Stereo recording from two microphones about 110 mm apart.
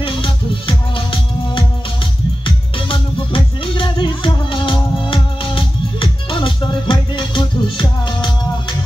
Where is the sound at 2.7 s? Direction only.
50° left (ahead or behind).